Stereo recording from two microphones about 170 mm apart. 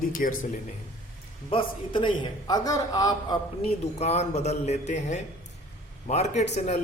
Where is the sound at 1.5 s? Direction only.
30° left (ahead or behind).